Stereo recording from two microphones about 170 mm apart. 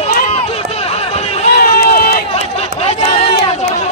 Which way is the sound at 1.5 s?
60° left (ahead or behind).